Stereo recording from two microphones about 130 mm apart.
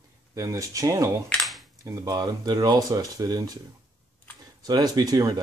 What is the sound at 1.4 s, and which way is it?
Cutlery, centre (ahead or behind).